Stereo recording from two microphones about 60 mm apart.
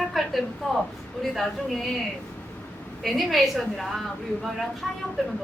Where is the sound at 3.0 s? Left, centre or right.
Centre.